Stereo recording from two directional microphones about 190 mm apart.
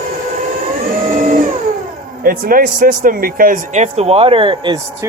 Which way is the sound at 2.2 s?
50° right (ahead or behind).